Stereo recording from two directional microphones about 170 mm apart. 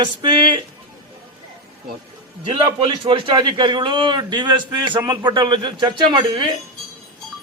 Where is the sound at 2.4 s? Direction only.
30° right (ahead or behind).